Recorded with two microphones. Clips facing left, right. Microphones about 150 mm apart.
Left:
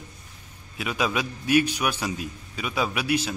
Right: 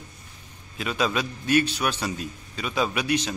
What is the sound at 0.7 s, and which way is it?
A man's voice, 10° left (ahead or behind).